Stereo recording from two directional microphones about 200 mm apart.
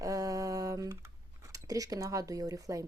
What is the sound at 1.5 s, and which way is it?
Speech, 15° right (ahead or behind).